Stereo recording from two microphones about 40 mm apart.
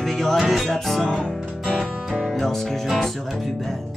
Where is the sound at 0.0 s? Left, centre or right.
Centre.